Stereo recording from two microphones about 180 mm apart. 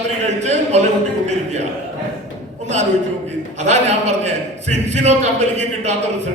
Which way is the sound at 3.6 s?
40° right (ahead or behind).